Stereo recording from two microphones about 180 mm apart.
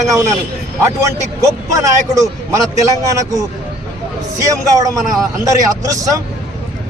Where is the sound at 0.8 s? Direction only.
15° right (ahead or behind).